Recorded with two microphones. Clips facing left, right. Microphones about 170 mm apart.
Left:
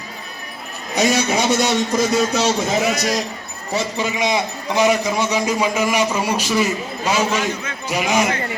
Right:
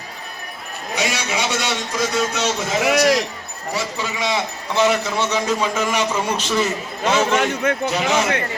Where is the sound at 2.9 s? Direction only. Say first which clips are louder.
Right 5 dB; 75° right (ahead or behind).